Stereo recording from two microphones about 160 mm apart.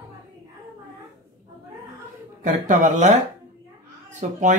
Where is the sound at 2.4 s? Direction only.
50° right (ahead or behind).